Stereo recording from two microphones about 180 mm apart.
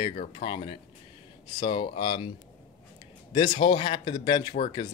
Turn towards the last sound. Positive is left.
turn(degrees=25)  # may be behind; listen again after turning